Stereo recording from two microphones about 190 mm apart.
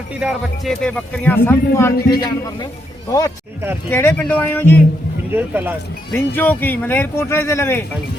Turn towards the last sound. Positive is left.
turn(degrees=15)  # may be behind; listen again after turning